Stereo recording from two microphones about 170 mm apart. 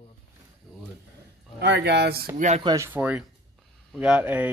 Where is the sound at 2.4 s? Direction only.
40° right (ahead or behind).